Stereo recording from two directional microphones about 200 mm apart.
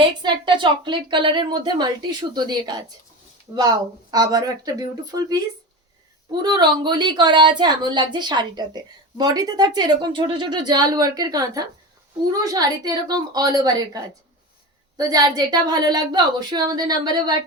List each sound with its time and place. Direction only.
0.2 s a woman's voice: 25° right (ahead or behind)